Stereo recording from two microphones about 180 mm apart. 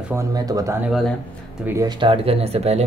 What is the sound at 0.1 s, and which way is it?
Speech, 20° right (ahead or behind).